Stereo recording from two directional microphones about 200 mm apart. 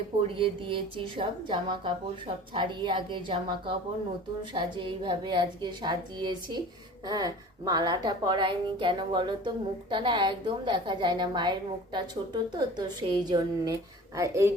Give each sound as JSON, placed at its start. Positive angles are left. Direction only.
{"t": 0.3, "sound": "a woman's voice", "side_deg": -25}
{"t": 12.5, "sound": "a woman's voice", "side_deg": -20}